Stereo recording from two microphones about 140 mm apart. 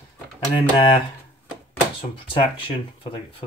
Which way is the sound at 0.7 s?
35° left (ahead or behind).